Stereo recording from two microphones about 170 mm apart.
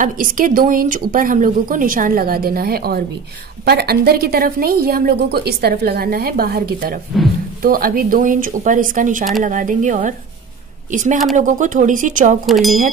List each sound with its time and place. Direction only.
0.0 s a woman's voice: 50° right (ahead or behind)
12.4 s speech: centre (ahead or behind)